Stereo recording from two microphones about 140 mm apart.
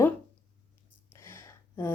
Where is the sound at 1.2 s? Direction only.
20° left (ahead or behind).